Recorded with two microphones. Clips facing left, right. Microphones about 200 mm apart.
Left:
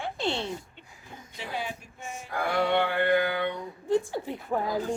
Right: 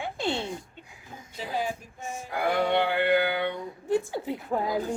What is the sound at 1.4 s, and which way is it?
Music, 40° right (ahead or behind).